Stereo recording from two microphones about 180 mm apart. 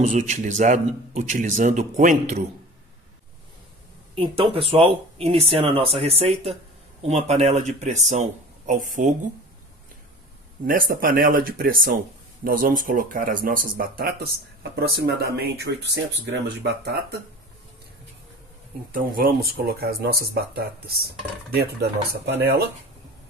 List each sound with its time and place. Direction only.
0.0 s speech: 45° right (ahead or behind)
4.1 s speech: 30° right (ahead or behind)
10.6 s speech: 50° right (ahead or behind)
18.9 s speech: 50° right (ahead or behind)